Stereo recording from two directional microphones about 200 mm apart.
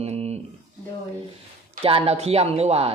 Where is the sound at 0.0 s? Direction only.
30° right (ahead or behind).